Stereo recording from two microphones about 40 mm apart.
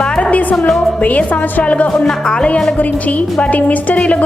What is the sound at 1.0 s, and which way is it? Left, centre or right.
Speech, left.